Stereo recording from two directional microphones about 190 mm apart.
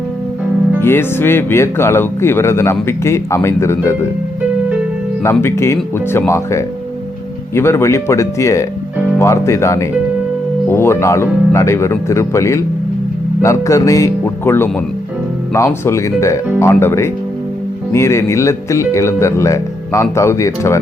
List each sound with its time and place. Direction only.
0.8 s speech: 10° left (ahead or behind)
5.2 s speech: 15° left (ahead or behind)